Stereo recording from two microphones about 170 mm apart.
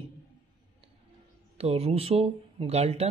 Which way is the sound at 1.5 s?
35° right (ahead or behind).